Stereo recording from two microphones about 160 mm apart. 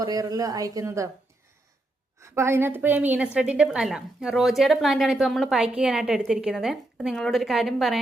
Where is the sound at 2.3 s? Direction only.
15° right (ahead or behind).